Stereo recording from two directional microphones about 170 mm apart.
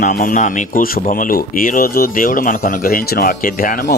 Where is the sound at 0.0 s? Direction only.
55° left (ahead or behind).